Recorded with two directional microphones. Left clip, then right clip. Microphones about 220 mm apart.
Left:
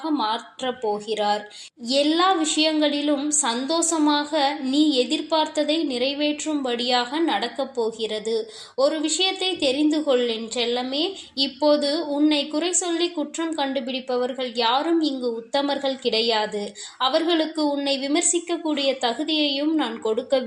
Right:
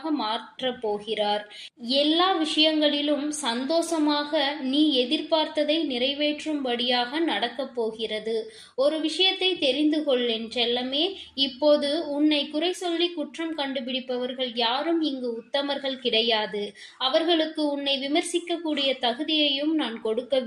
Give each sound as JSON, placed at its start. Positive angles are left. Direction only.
{"t": 0.0, "sound": "a woman's voice", "side_deg": 15}